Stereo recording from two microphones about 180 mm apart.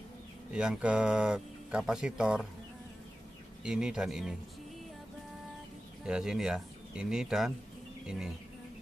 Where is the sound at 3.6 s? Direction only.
5° right (ahead or behind).